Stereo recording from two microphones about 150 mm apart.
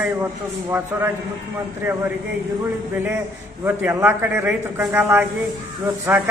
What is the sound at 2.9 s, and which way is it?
Speech, 15° right (ahead or behind).